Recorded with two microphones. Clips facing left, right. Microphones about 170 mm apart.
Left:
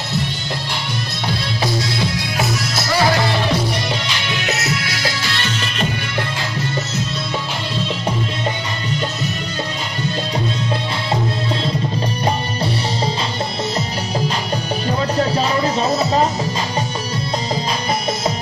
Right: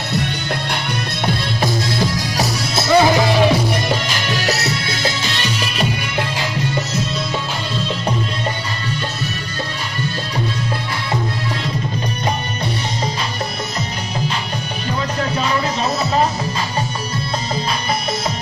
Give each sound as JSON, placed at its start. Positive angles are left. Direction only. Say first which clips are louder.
{"t": 2.7, "sound": "music", "louder": "right 6 dB", "side_deg": -25}
{"t": 3.9, "sound": "music", "louder": "right 3 dB", "side_deg": -45}